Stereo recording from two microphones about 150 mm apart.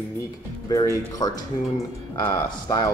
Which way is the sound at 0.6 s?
25° left (ahead or behind).